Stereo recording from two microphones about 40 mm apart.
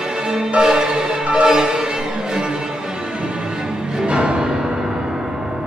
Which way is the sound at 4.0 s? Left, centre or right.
Right.